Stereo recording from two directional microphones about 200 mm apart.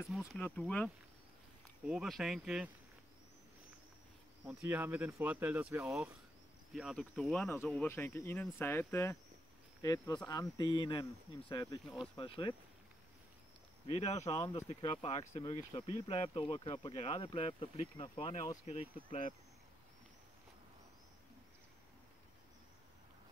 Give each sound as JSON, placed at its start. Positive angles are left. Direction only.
{"t": 0.1, "sound": "speech", "side_deg": 0}
{"t": 4.5, "sound": "speech", "side_deg": -10}
{"t": 13.8, "sound": "speech", "side_deg": 30}